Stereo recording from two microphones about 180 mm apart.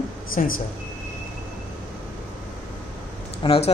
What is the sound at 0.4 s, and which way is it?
Speech, 45° left (ahead or behind).